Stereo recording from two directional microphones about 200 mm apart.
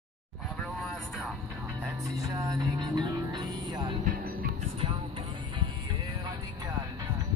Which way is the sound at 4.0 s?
45° right (ahead or behind).